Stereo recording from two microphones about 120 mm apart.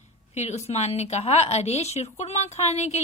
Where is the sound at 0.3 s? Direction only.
70° left (ahead or behind).